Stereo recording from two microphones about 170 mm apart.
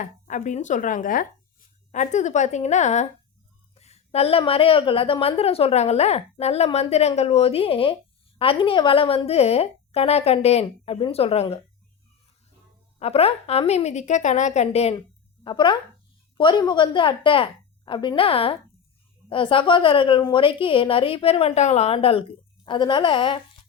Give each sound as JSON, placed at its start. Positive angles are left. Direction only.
{"t": 0.0, "sound": "a woman's voice", "side_deg": 45}
{"t": 13.0, "sound": "a woman's voice", "side_deg": 35}
{"t": 15.4, "sound": "a woman's voice", "side_deg": 30}